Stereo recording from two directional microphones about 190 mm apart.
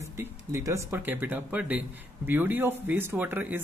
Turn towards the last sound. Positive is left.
turn(degrees=-10)  # may be behind; listen again after turning